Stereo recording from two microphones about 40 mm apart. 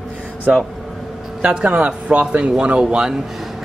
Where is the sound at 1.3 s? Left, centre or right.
Right.